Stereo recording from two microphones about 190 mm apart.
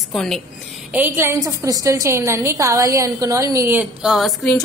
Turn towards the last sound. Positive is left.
turn(degrees=0)  # may be behind; listen again after turning